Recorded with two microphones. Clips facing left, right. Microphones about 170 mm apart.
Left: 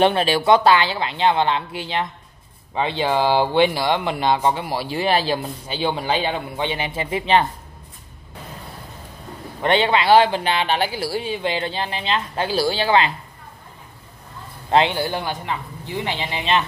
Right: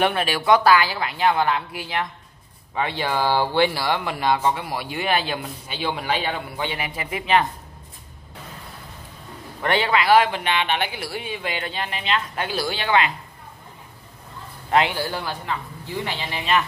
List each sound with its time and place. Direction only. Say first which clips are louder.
0.0 s a man's voice: left 5 dB; 30° left (ahead or behind)
9.6 s speech: left 3 dB; 25° left (ahead or behind)
14.7 s a man's voice: left 3 dB; 25° left (ahead or behind)